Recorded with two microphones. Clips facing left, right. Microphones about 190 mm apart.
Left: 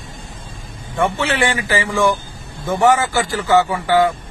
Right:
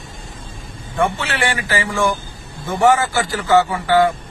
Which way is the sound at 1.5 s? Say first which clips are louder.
Left 2 dB; 20° left (ahead or behind).